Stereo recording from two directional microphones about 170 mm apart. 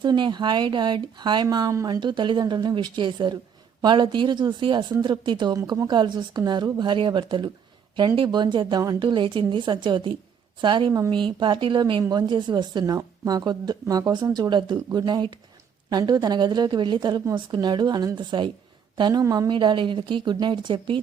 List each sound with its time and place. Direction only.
0.0 s a woman's voice: 25° right (ahead or behind)